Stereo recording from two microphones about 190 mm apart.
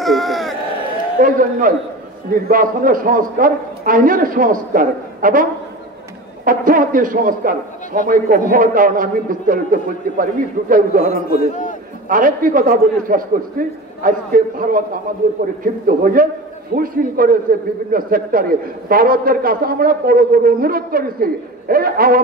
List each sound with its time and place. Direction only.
0.0 s a sound: centre (ahead or behind)
1.2 s a man's voice: 45° right (ahead or behind)
11.2 s a man's voice: 55° left (ahead or behind)
12.1 s a man's voice: 45° right (ahead or behind)